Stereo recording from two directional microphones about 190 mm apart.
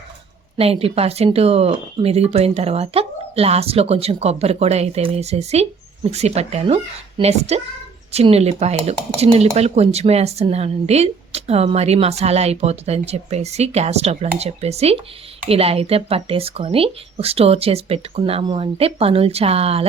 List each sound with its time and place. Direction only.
0.5 s speech: 30° right (ahead or behind)